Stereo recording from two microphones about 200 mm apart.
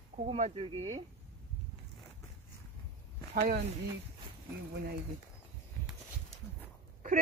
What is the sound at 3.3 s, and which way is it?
Speech, 50° right (ahead or behind).